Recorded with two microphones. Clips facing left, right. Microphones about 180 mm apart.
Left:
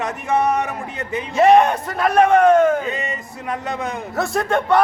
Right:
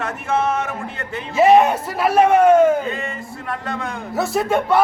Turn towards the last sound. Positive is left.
turn(degrees=-5)  # may be behind; listen again after turning